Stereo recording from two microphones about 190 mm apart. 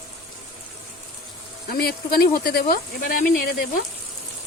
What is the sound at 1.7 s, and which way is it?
Speech, 55° left (ahead or behind).